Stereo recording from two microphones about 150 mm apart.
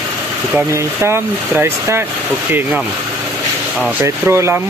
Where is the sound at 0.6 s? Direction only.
15° right (ahead or behind).